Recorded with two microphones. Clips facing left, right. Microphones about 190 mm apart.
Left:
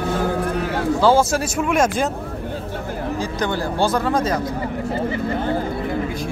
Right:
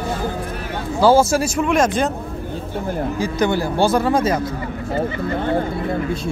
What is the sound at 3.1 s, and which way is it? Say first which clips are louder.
Speech: right 4 dB; 10° right (ahead or behind).